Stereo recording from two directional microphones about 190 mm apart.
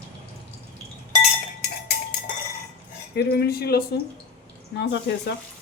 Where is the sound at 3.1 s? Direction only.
60° left (ahead or behind).